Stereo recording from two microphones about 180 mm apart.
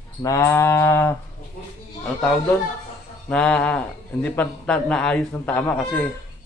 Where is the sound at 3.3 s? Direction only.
5° left (ahead or behind).